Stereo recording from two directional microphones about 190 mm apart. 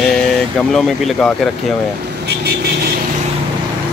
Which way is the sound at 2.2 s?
60° right (ahead or behind).